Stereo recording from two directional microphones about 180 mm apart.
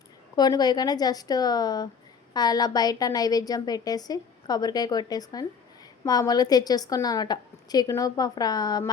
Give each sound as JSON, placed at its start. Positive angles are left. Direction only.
{"t": 0.3, "sound": "a woman's voice", "side_deg": 20}